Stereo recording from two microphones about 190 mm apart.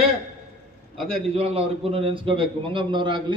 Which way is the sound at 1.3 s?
30° right (ahead or behind).